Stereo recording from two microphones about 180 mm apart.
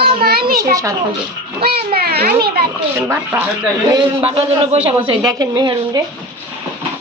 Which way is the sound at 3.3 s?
15° right (ahead or behind).